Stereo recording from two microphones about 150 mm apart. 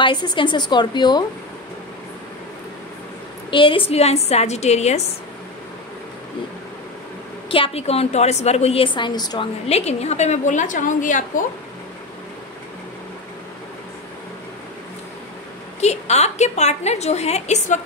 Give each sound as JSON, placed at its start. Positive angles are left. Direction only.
{"t": 0.0, "sound": "a woman's voice", "side_deg": 30}
{"t": 3.4, "sound": "a woman's voice", "side_deg": 35}
{"t": 7.4, "sound": "a woman's voice", "side_deg": 40}
{"t": 9.7, "sound": "a woman's voice", "side_deg": 45}
{"t": 15.8, "sound": "a woman's voice", "side_deg": 45}